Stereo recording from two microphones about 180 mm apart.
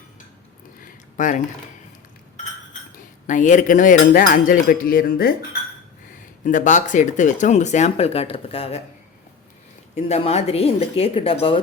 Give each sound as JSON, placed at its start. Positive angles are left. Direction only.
{"t": 0.9, "sound": "a sound", "side_deg": 45}
{"t": 3.2, "sound": "cutlery", "side_deg": 45}
{"t": 6.4, "sound": "speech", "side_deg": 45}
{"t": 9.9, "sound": "speech", "side_deg": 35}